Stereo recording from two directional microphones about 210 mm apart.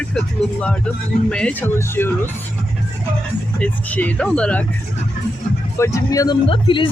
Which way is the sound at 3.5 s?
5° left (ahead or behind).